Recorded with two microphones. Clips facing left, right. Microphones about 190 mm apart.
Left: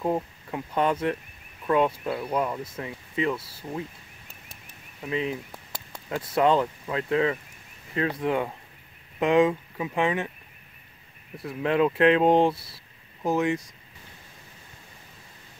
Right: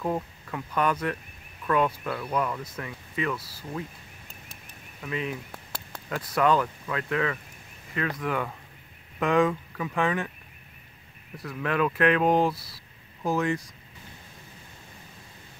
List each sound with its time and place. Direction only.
0.0 s speech: 25° left (ahead or behind)
5.0 s speech: 25° left (ahead or behind)
11.3 s speech: 25° left (ahead or behind)